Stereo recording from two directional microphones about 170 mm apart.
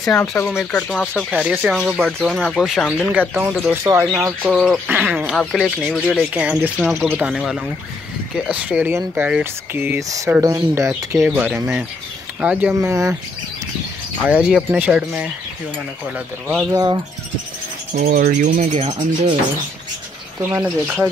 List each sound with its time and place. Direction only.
0.0 s speech: 5° left (ahead or behind)
14.2 s speech: centre (ahead or behind)
16.7 s speech: 25° right (ahead or behind)
17.9 s speech: 55° right (ahead or behind); by 19.3 s 30° right (ahead or behind)
20.5 s speech: 10° right (ahead or behind)